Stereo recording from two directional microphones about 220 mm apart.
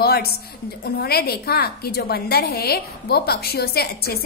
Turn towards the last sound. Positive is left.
turn(degrees=45)  # may be behind; listen again after turning